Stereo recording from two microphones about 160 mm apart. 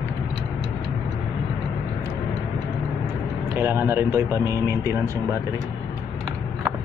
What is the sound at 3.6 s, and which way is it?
Speech, 15° right (ahead or behind).